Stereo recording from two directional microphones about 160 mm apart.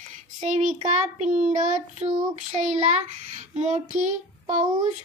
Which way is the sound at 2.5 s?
50° right (ahead or behind).